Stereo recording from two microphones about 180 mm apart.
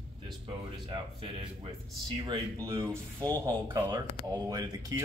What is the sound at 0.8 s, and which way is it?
Speech, 25° right (ahead or behind).